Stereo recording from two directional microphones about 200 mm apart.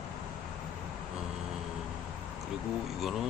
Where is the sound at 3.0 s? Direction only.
Centre (ahead or behind).